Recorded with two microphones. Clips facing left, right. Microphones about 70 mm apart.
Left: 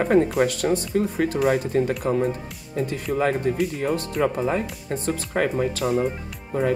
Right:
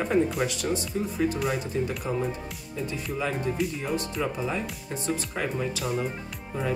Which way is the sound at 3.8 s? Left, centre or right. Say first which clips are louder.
Left 6 dB; left.